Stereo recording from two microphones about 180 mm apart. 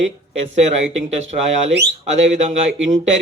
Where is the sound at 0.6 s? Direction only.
40° right (ahead or behind).